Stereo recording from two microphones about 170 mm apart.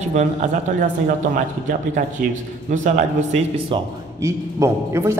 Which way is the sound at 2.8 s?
40° right (ahead or behind).